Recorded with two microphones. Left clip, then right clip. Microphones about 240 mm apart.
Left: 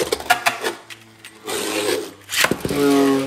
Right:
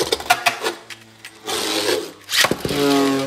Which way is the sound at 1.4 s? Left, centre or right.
Centre.